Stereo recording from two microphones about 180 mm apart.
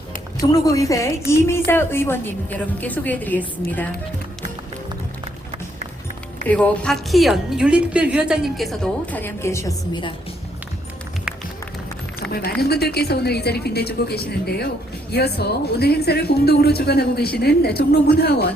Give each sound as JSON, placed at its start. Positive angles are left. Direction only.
{"t": 0.5, "sound": "a woman's voice", "side_deg": 20}
{"t": 6.5, "sound": "a woman's voice", "side_deg": 5}
{"t": 12.3, "sound": "speech", "side_deg": 60}